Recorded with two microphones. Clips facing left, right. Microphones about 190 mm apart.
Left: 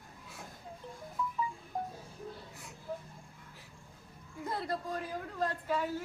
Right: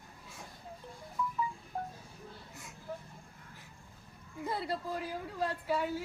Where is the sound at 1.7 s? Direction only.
15° left (ahead or behind).